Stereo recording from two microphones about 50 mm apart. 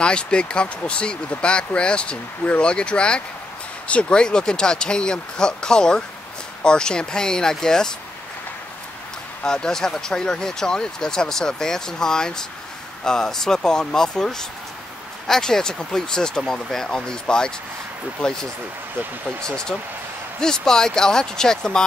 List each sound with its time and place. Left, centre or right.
0.0 s speech: centre
9.4 s speech: centre
19.4 s speech: centre